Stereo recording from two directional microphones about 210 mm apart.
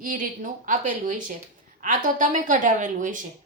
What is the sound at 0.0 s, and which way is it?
A woman's voice, 40° right (ahead or behind).